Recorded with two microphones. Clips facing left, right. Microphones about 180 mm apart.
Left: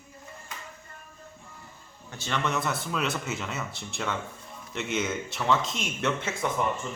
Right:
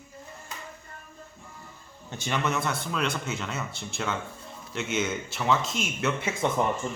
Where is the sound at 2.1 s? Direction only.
15° right (ahead or behind).